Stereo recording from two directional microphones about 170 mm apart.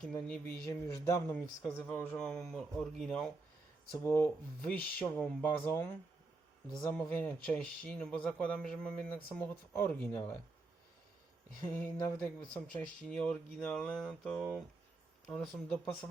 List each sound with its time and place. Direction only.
0.3 s speech: 5° left (ahead or behind)
0.7 s speech: 20° left (ahead or behind)
11.6 s speech: 15° left (ahead or behind)